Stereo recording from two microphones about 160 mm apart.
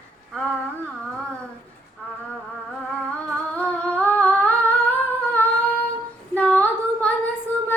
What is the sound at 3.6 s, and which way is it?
Humming, 10° left (ahead or behind).